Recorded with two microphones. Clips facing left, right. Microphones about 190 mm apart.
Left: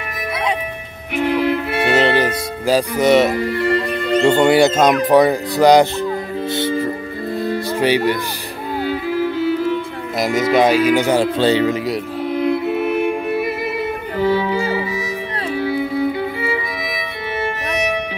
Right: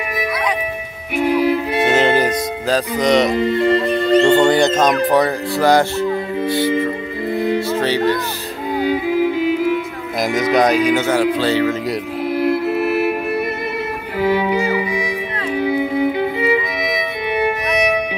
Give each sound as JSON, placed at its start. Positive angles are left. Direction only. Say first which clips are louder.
{"t": 1.1, "sound": "music", "louder": "right 2 dB", "side_deg": -10}
{"t": 2.6, "sound": "speech", "louder": "left 3 dB", "side_deg": 10}
{"t": 3.3, "sound": "speech", "louder": "right 3 dB", "side_deg": -25}
{"t": 4.2, "sound": "speech", "louder": "left 2 dB", "side_deg": 10}
{"t": 7.2, "sound": "music", "louder": "right 3 dB", "side_deg": -15}
{"t": 7.7, "sound": "speech", "louder": "even", "side_deg": 10}
{"t": 8.7, "sound": "music", "louder": "right 3 dB", "side_deg": -15}
{"t": 10.5, "sound": "speech", "louder": "left 1 dB", "side_deg": 5}
{"t": 11.8, "sound": "music", "louder": "even", "side_deg": -5}